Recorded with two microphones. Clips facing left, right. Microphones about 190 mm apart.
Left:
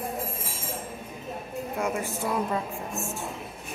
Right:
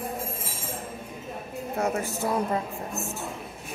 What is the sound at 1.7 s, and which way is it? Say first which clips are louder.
Speech: right 2 dB; 40° right (ahead or behind).